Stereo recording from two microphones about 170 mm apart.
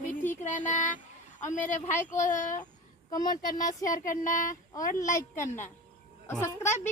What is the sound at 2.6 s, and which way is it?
A woman's voice, 25° left (ahead or behind).